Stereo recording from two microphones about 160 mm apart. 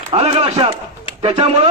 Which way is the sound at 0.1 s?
40° right (ahead or behind).